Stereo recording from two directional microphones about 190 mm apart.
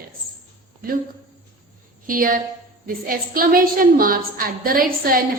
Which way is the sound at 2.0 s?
50° right (ahead or behind).